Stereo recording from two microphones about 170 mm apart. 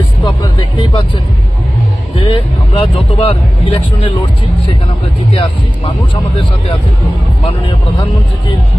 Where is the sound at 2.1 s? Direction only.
30° left (ahead or behind).